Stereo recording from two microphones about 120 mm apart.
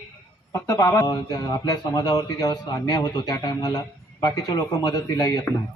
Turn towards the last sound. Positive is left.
turn(degrees=30)  # may be behind; listen again after turning